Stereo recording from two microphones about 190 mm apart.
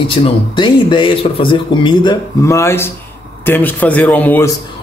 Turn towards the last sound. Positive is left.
turn(degrees=10)  # may be behind; listen again after turning